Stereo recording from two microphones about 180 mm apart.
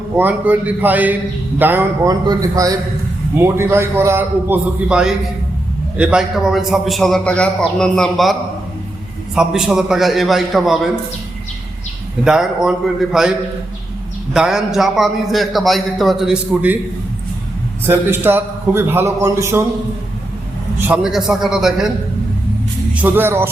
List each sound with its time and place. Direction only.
0.2 s a man's voice: 10° right (ahead or behind)
2.2 s a man's voice: 20° right (ahead or behind); by 10.8 s centre (ahead or behind)
12.2 s a man's voice: 5° right (ahead or behind)
14.3 s a man's voice: 5° right (ahead or behind)
17.8 s a man's voice: 10° right (ahead or behind)
20.8 s a man's voice: 5° right (ahead or behind)
23.0 s a man's voice: 10° right (ahead or behind)